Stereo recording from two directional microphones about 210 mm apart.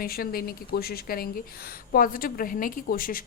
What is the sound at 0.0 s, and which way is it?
A woman's voice, 45° left (ahead or behind).